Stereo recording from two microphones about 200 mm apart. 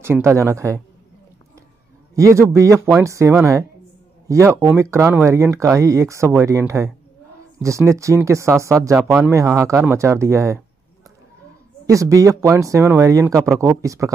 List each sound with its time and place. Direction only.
0.0 s speech: 15° right (ahead or behind)
2.1 s speech: 15° right (ahead or behind)
11.8 s speech: 15° right (ahead or behind)